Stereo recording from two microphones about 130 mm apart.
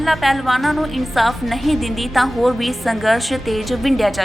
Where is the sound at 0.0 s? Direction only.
Centre (ahead or behind).